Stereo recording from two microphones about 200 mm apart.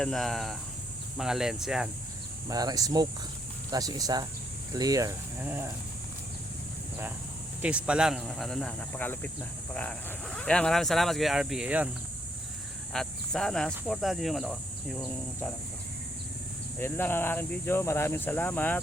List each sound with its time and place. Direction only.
0.0 s speech: centre (ahead or behind)
2.5 s speech: 20° right (ahead or behind)
7.6 s speech: 5° right (ahead or behind)
12.9 s speech: 5° left (ahead or behind)
16.7 s speech: 10° left (ahead or behind)